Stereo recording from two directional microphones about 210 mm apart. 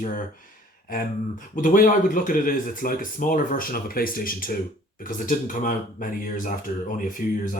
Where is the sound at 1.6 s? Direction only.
40° left (ahead or behind).